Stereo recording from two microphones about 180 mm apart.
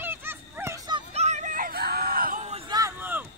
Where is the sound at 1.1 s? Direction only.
40° right (ahead or behind).